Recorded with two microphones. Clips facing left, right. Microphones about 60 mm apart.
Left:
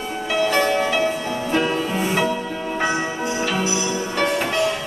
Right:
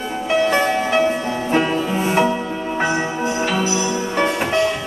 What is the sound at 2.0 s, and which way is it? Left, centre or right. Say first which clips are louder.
Music: right 5 dB; right.